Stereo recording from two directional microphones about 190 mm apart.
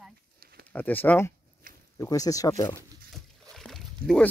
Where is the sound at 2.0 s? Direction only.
20° left (ahead or behind).